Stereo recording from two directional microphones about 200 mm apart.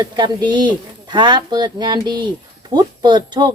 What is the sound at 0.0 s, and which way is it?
Speech, 20° right (ahead or behind).